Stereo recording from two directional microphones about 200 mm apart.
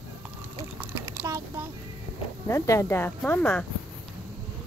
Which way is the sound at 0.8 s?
10° right (ahead or behind).